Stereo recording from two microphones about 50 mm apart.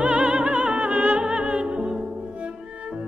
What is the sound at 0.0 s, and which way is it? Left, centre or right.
Music, right.